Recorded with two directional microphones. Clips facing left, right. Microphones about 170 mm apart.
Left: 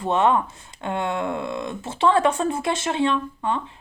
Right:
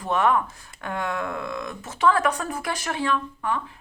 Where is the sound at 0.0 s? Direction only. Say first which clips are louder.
Left 2 dB; 25° left (ahead or behind).